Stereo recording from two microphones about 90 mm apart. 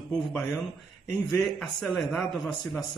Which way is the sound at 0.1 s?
5° left (ahead or behind).